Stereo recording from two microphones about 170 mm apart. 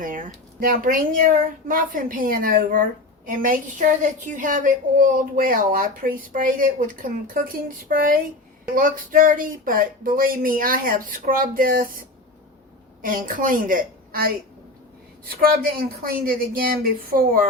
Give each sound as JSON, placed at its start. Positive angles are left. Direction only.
{"t": 0.0, "sound": "speech", "side_deg": -50}
{"t": 16.0, "sound": "speech", "side_deg": -60}